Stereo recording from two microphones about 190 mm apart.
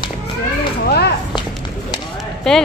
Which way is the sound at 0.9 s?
60° left (ahead or behind).